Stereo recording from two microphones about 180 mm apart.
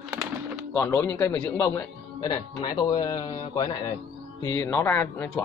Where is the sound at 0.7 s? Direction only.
10° left (ahead or behind).